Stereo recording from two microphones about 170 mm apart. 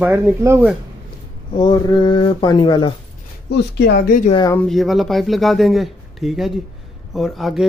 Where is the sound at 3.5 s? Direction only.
80° left.